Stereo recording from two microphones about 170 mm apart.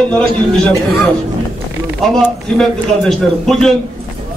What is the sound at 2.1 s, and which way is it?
A man's voice, centre (ahead or behind).